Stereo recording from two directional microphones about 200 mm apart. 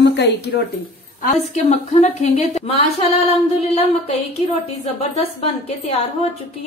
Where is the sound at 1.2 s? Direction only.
35° left (ahead or behind).